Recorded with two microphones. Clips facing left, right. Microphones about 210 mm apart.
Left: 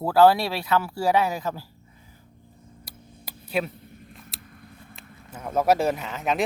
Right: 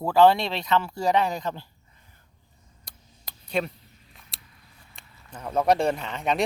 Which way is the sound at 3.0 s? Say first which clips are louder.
Left 11 dB; 55° left (ahead or behind).